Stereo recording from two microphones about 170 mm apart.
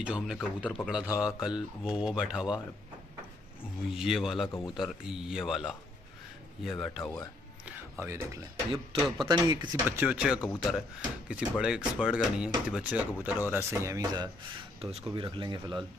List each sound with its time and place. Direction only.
0.0 s speech: 5° right (ahead or behind)
3.9 s speech: 5° right (ahead or behind)
7.0 s speech: 15° left (ahead or behind)
8.0 s speech: 15° right (ahead or behind)
9.9 s speech: 5° right (ahead or behind)
14.8 s speech: 35° right (ahead or behind)